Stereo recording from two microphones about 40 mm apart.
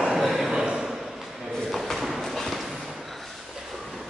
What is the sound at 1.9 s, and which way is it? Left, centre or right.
Clip-clop, centre.